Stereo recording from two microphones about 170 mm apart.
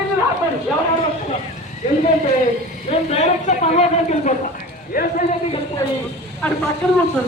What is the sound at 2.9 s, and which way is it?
Speech, 40° left (ahead or behind).